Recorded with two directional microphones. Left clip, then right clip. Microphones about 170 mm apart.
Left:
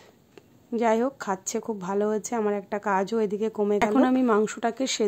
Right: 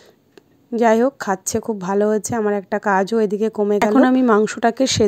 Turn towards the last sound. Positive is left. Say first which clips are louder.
# right 10 dB
turn(degrees=-35)  # may be behind; listen again after turning